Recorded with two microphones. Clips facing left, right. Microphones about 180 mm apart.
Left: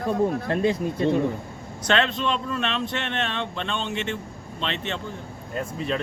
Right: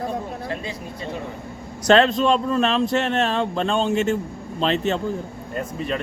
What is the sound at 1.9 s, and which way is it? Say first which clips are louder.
A man's voice: right 7 dB; 40° right (ahead or behind).